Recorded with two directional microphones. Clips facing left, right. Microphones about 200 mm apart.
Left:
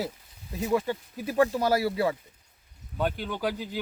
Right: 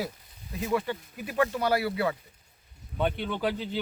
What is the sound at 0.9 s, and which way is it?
Speech, 35° left (ahead or behind).